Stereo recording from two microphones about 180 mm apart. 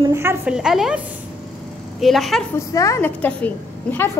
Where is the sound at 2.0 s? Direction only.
Centre (ahead or behind).